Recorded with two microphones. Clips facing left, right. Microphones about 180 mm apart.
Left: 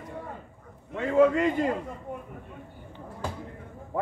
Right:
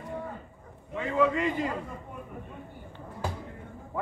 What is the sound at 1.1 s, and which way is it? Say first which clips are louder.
Speech: left 5 dB; 45° left (ahead or behind).